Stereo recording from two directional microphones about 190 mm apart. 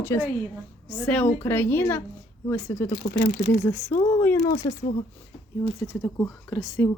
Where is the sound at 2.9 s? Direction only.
50° left (ahead or behind).